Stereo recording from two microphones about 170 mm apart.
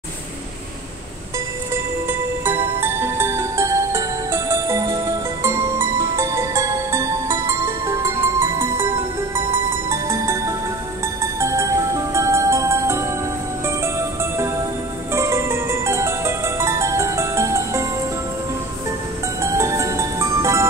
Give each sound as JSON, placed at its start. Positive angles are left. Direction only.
{"t": 1.7, "sound": "music", "side_deg": -10}
{"t": 19.4, "sound": "music", "side_deg": -15}